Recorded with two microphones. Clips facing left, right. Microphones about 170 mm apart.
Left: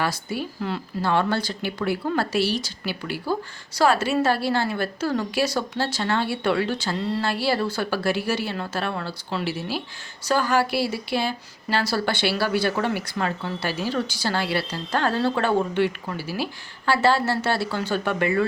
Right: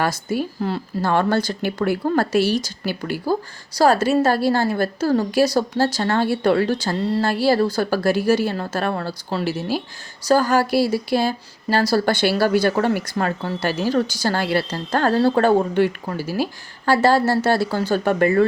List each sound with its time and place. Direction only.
0.0 s speech: 45° right (ahead or behind)